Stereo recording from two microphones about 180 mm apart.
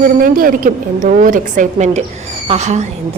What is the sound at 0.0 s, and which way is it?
A woman's voice, 50° right (ahead or behind).